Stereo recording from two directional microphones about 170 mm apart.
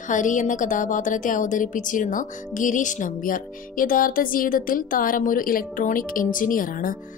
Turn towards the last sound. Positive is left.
turn(degrees=55)  # may be behind; listen again after turning